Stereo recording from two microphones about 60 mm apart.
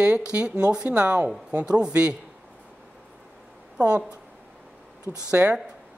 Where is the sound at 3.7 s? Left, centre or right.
Centre.